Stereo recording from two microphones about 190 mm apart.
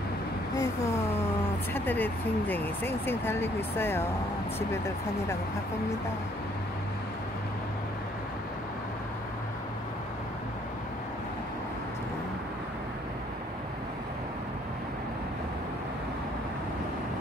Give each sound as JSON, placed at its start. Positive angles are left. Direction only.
{"t": 1.7, "sound": "speech", "side_deg": 10}